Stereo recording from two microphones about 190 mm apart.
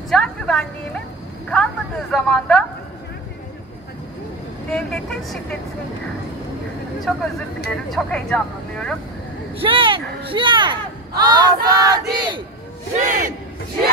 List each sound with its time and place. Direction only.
0.1 s speech: 5° left (ahead or behind)
4.6 s speech: 5° left (ahead or behind)
7.1 s speech: centre (ahead or behind)
9.6 s speech: 25° right (ahead or behind)
12.9 s speech: 40° right (ahead or behind)